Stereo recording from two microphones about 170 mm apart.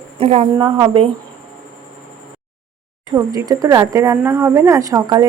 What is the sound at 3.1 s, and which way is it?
A woman's voice, 20° right (ahead or behind).